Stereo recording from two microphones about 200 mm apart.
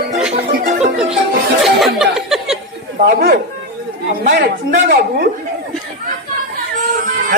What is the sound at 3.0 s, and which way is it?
A woman's voice, 50° right (ahead or behind).